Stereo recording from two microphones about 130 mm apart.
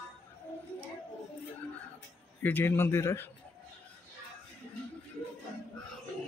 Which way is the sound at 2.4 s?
15° left (ahead or behind).